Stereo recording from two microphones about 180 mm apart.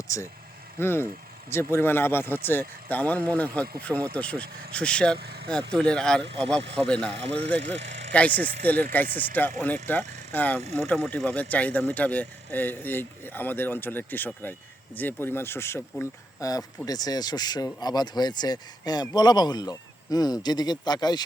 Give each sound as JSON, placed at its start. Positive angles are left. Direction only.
{"t": 0.1, "sound": "speech", "side_deg": 15}
{"t": 5.1, "sound": "speech", "side_deg": -60}
{"t": 5.7, "sound": "speech", "side_deg": 5}
{"t": 7.2, "sound": "speech", "side_deg": -35}
{"t": 7.8, "sound": "vehicle", "side_deg": -40}
{"t": 8.1, "sound": "speech", "side_deg": 10}